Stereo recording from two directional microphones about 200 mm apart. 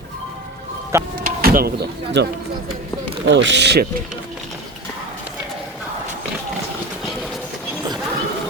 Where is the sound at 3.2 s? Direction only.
65° right (ahead or behind).